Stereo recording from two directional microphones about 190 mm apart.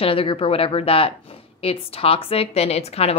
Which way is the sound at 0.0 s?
30° left (ahead or behind).